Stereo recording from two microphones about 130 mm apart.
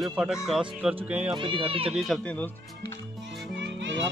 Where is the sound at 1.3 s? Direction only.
40° right (ahead or behind).